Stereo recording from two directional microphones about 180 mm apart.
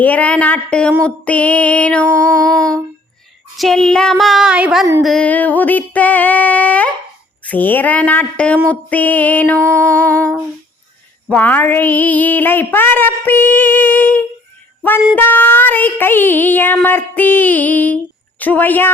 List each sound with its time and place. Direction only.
0.0 s child singing: 10° left (ahead or behind)
3.6 s a sound: 5° left (ahead or behind)
5.0 s child singing: 5° left (ahead or behind)
14.8 s music: 10° left (ahead or behind)
15.1 s child singing: 10° left (ahead or behind)